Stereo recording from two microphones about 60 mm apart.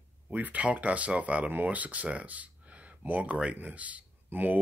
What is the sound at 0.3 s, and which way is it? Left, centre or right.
Speech, right.